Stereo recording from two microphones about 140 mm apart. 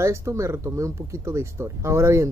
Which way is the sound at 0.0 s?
20° right (ahead or behind).